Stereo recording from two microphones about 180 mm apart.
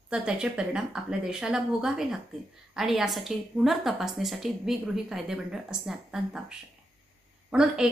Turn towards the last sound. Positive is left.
turn(degrees=-5)  # may be behind; listen again after turning